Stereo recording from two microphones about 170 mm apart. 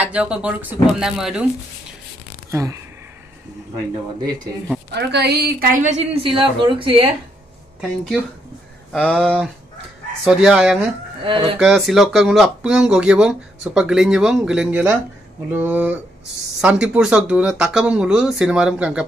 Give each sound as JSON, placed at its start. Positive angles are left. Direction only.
{"t": 0.0, "sound": "speech", "side_deg": -5}
{"t": 2.5, "sound": "speech", "side_deg": -20}
{"t": 4.9, "sound": "a woman's voice", "side_deg": -75}
{"t": 5.7, "sound": "a woman's voice", "side_deg": -45}
{"t": 7.8, "sound": "speech", "side_deg": 0}
{"t": 11.2, "sound": "a woman's voice", "side_deg": -30}
{"t": 11.6, "sound": "speech", "side_deg": 0}